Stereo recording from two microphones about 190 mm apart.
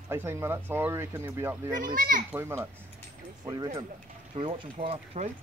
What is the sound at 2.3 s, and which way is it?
Speech, 15° right (ahead or behind).